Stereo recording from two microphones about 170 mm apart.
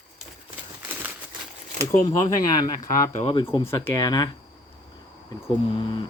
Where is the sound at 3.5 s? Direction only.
20° left (ahead or behind).